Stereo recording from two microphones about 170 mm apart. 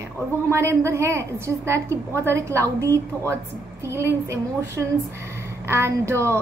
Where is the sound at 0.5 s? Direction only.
15° right (ahead or behind).